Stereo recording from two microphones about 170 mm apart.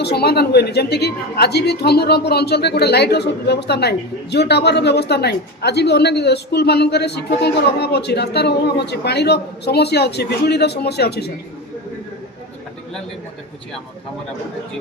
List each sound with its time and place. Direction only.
0.0 s a woman's voice: 70° left (ahead or behind)